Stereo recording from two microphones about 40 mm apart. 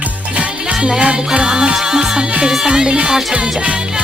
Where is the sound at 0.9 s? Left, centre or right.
Right.